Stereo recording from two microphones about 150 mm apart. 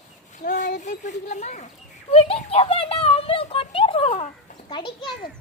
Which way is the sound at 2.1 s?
40° left (ahead or behind).